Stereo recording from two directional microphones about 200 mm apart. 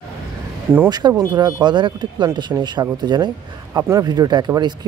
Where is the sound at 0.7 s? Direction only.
20° right (ahead or behind).